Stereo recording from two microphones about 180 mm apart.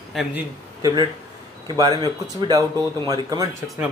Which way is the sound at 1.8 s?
20° right (ahead or behind).